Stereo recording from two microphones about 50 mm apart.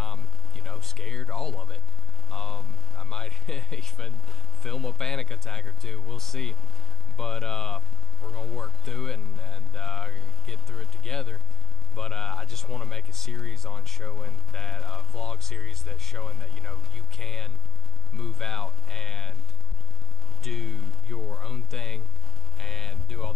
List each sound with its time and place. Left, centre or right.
0.0 s a sound: centre
2.2 s speech: centre
20.4 s speech: centre